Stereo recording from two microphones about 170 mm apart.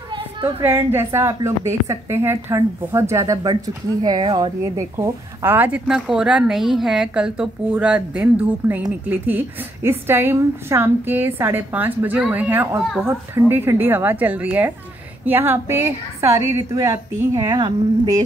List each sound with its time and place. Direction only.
0.6 s speech: 15° right (ahead or behind)